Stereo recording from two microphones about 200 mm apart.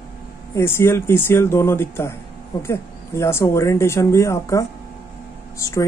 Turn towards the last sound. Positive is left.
turn(degrees=15)  # may be behind; listen again after turning